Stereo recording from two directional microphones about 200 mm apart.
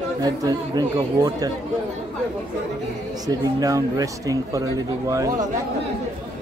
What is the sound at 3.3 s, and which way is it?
Speech, 20° right (ahead or behind).